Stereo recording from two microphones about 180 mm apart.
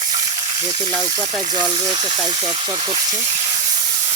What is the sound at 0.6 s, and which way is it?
Speech, 20° right (ahead or behind).